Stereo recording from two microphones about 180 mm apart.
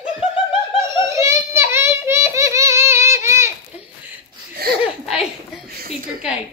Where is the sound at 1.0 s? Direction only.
15° right (ahead or behind).